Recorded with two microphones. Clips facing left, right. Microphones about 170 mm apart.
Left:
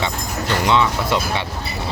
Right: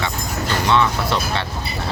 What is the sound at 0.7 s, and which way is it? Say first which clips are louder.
Speech: even; 15° left (ahead or behind).